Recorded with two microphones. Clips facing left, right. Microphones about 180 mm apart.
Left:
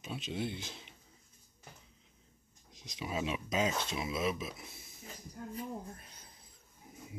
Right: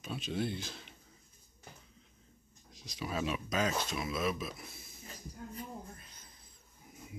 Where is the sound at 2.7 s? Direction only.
20° left (ahead or behind).